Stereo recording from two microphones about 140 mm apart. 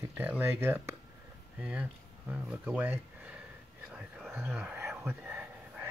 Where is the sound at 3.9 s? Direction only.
5° right (ahead or behind).